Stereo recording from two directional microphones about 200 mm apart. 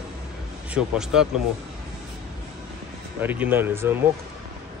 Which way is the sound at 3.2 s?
10° right (ahead or behind).